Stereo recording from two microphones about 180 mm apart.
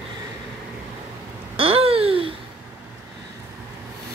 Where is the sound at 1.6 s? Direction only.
30° right (ahead or behind).